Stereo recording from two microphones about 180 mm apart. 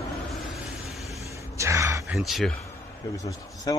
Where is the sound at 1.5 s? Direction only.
15° right (ahead or behind).